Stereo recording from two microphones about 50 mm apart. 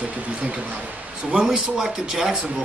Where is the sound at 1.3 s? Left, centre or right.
Centre.